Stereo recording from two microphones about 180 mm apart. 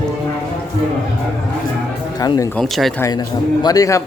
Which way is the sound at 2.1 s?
20° left (ahead or behind).